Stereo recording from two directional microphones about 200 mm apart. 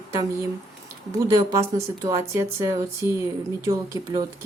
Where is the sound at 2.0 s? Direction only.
15° right (ahead or behind).